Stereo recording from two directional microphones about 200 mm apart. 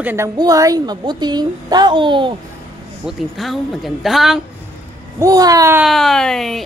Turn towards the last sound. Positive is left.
turn(degrees=0)  # may be behind; listen again after turning